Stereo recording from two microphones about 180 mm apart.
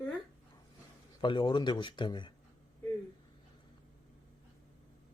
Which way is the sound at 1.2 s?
25° left (ahead or behind).